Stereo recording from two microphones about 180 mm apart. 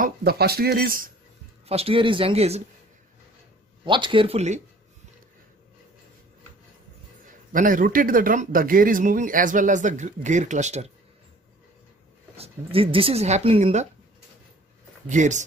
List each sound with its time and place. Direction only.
0.0 s speech: 60° right (ahead or behind)
1.7 s speech: 35° right (ahead or behind)
3.8 s speech: 25° right (ahead or behind)
7.5 s speech: 50° right (ahead or behind)
12.4 s speech: 30° right (ahead or behind)
15.0 s speech: 40° right (ahead or behind)